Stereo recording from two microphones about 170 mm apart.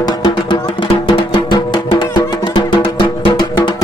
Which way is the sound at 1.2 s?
30° left (ahead or behind).